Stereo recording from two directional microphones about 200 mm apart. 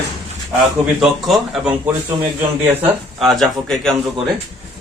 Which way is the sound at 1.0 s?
Centre (ahead or behind).